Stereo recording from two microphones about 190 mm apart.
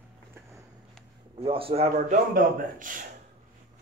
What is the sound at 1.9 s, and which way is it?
A man's voice, 45° right (ahead or behind).